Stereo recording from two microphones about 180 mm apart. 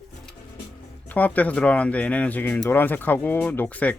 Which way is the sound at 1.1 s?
10° left (ahead or behind).